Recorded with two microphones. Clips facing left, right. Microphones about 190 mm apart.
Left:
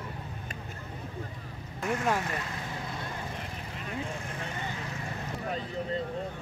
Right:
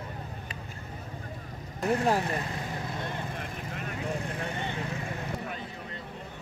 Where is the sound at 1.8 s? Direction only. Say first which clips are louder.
Right 3 dB; 35° right (ahead or behind).